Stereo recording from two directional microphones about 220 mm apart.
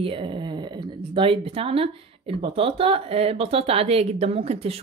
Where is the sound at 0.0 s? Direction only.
25° right (ahead or behind).